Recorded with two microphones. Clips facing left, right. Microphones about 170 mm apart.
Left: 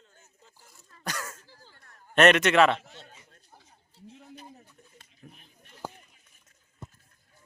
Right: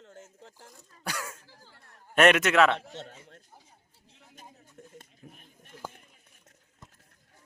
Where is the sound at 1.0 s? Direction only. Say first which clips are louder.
Even; 10° right (ahead or behind).